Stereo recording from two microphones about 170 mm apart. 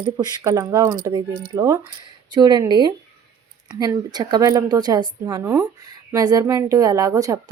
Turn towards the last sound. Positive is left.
turn(degrees=-20)  # may be behind; listen again after turning